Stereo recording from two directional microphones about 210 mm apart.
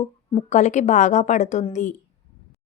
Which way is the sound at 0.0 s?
30° left (ahead or behind).